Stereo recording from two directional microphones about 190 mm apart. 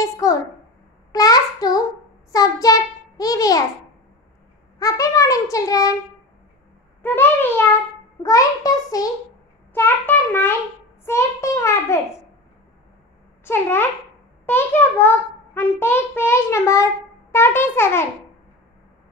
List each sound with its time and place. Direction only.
0.0 s a child's voice: 20° left (ahead or behind)
4.7 s a child's voice: 20° left (ahead or behind)
7.0 s a child's voice: 10° left (ahead or behind)
13.4 s a child's voice: 10° left (ahead or behind)